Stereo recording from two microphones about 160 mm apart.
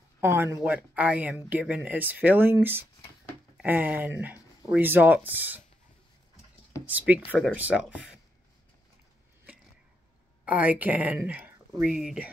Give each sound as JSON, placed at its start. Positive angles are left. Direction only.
{"t": 0.2, "sound": "speech", "side_deg": -15}
{"t": 6.9, "sound": "speech", "side_deg": -10}
{"t": 10.4, "sound": "speech", "side_deg": -10}